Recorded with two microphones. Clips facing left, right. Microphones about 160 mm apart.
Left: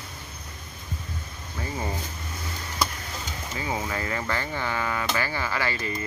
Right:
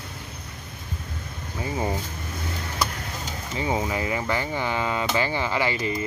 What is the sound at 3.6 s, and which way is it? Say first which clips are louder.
Speech: right 5 dB; 20° right (ahead or behind).